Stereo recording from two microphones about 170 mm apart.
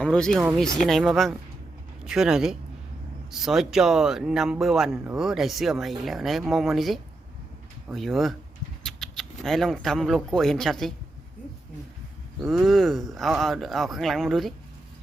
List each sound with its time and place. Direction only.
0.0 s speech: 5° left (ahead or behind)
12.6 s speech: centre (ahead or behind)